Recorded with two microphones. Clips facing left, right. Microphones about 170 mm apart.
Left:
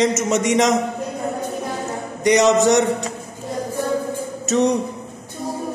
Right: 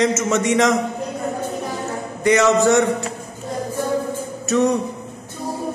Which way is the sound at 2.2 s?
20° left (ahead or behind).